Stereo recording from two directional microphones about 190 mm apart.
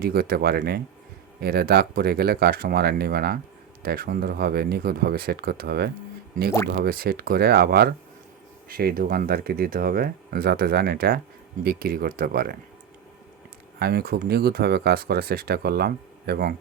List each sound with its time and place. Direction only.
0.0 s speech: 55° right (ahead or behind)
13.7 s speech: 55° right (ahead or behind)